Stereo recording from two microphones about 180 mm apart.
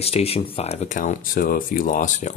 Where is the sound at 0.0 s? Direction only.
35° left (ahead or behind).